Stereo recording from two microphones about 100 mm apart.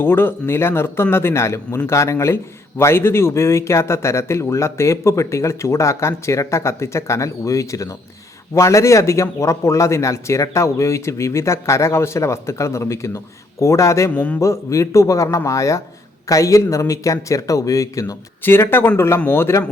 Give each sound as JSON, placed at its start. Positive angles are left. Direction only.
{"t": 0.0, "sound": "speech", "side_deg": 20}
{"t": 14.1, "sound": "a man's voice", "side_deg": 15}
{"t": 14.3, "sound": "speech", "side_deg": 30}
{"t": 18.4, "sound": "speech", "side_deg": 25}